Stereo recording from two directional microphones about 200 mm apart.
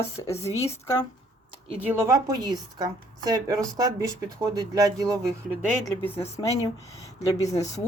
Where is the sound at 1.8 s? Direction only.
10° right (ahead or behind).